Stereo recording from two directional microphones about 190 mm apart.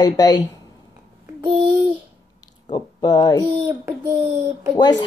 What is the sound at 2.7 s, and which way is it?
Speech, 20° left (ahead or behind).